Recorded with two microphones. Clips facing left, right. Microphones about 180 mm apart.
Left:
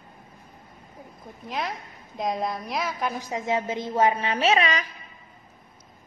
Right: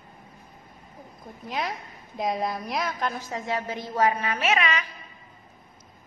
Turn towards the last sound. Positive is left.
turn(degrees=35)  # may be behind; listen again after turning